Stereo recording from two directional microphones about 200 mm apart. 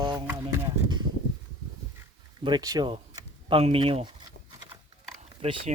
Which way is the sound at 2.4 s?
20° right (ahead or behind).